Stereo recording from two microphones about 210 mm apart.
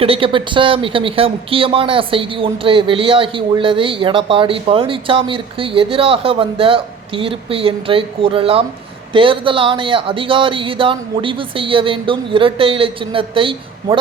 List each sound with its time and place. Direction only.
0.0 s speech: 25° right (ahead or behind)